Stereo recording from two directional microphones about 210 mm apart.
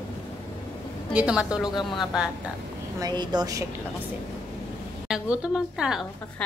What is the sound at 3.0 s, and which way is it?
Speech, 20° right (ahead or behind).